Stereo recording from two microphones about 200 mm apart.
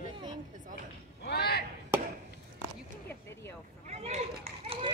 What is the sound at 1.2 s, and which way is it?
Speech, 50° left (ahead or behind).